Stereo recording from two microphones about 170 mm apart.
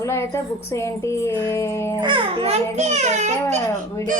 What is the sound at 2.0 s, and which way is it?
A child's voice, 30° right (ahead or behind).